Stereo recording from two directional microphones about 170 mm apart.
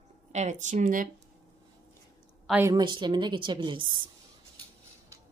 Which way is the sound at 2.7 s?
25° right (ahead or behind).